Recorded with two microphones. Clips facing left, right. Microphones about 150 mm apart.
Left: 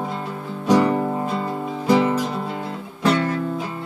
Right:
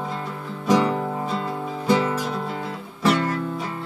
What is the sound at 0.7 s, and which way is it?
Music, 5° left (ahead or behind).